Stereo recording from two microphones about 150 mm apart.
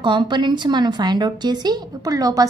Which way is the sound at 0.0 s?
30° right (ahead or behind).